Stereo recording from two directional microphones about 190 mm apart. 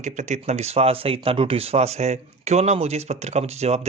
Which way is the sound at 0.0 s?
40° right (ahead or behind).